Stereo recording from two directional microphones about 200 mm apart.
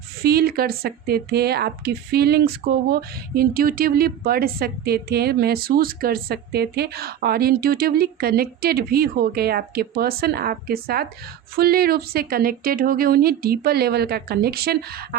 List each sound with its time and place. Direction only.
0.2 s a woman's voice: 50° right (ahead or behind)